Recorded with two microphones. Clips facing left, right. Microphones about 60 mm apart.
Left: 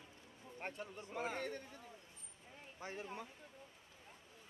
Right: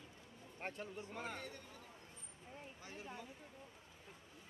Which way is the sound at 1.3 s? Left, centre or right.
Left.